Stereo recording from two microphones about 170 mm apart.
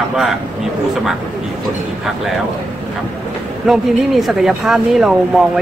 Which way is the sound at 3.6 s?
Centre (ahead or behind).